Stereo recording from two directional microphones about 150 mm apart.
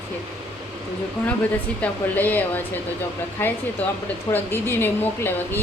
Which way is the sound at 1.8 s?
10° left (ahead or behind).